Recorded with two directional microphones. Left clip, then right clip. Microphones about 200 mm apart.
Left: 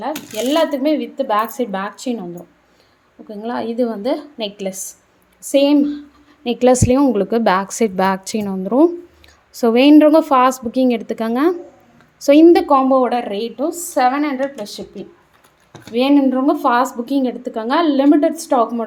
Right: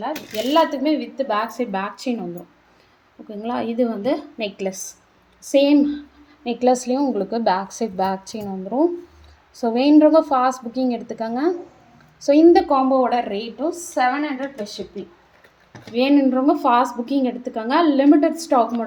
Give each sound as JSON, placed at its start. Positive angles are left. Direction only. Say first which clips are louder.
{"t": 0.0, "sound": "a woman's voice", "louder": "left 3 dB", "side_deg": 40}
{"t": 3.2, "sound": "a woman's voice", "louder": "left 2 dB", "side_deg": 15}
{"t": 6.4, "sound": "a woman's voice", "louder": "left 5 dB", "side_deg": 30}
{"t": 15.9, "sound": "a woman's voice", "louder": "left 3 dB", "side_deg": 25}